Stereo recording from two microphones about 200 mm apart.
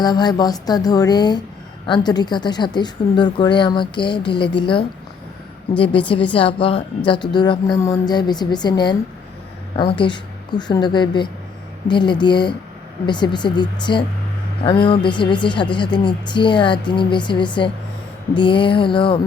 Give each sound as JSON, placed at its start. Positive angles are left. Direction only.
{"t": 0.0, "sound": "speech", "side_deg": 20}
{"t": 6.3, "sound": "speech", "side_deg": 25}